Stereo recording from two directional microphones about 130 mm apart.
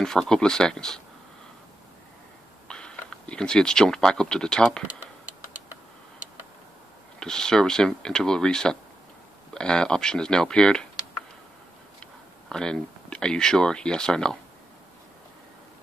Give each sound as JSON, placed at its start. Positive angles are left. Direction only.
{"t": 0.0, "sound": "speech", "side_deg": 5}
{"t": 2.7, "sound": "speech", "side_deg": 5}
{"t": 7.2, "sound": "speech", "side_deg": 5}
{"t": 12.0, "sound": "speech", "side_deg": 5}